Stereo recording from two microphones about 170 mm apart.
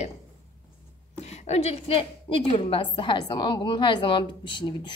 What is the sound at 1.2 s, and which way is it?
A woman's voice, 40° left (ahead or behind).